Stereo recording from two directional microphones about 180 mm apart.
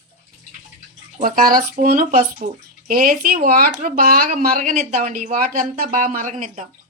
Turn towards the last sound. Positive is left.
turn(degrees=-40)  # may be behind; listen again after turning